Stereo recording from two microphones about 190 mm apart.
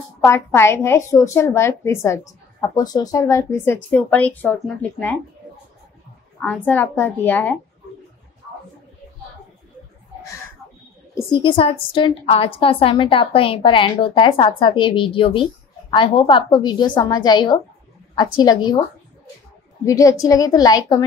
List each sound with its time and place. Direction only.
0.2 s a woman's voice: 15° left (ahead or behind)
6.4 s a woman's voice: 10° left (ahead or behind)
11.2 s a woman's voice: 25° left (ahead or behind)
19.8 s a woman's voice: 15° left (ahead or behind)